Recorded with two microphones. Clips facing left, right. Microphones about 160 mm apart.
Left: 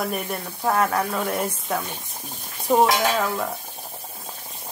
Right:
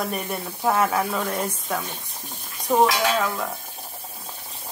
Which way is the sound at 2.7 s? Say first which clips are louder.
Left 1 dB; 15° left (ahead or behind).